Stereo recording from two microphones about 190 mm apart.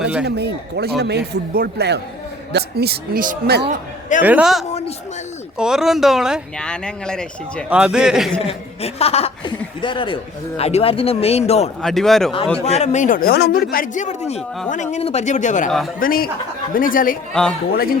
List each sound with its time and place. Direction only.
0.0 s speech: 5° right (ahead or behind)
0.3 s a man's voice: 60° right (ahead or behind)
4.2 s a man's voice: 5° right (ahead or behind)
8.4 s speech: 30° left (ahead or behind)
11.8 s speech: centre (ahead or behind)
12.6 s speech: 35° left (ahead or behind)